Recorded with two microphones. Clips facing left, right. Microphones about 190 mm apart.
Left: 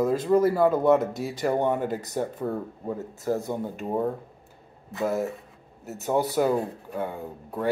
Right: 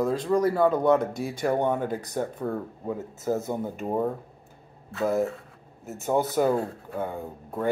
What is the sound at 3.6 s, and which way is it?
Speech, centre (ahead or behind).